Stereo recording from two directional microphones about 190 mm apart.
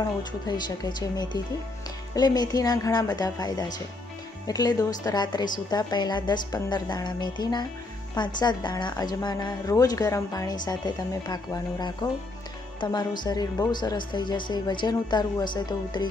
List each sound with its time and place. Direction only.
0.0 s a woman's voice: 20° left (ahead or behind)